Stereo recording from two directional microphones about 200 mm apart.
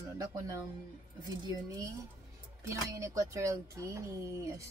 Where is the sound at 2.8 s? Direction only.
15° right (ahead or behind).